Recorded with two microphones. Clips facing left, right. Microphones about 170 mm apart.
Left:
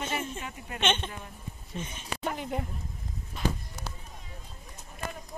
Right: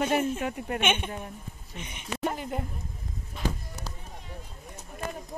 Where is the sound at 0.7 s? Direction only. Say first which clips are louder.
Even; 10° right (ahead or behind).